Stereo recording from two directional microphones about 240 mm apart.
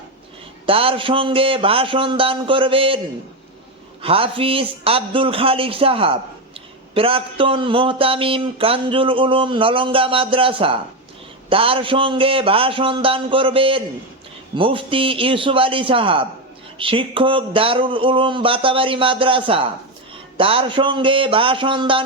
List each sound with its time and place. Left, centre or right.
0.6 s speech: right
4.0 s speech: right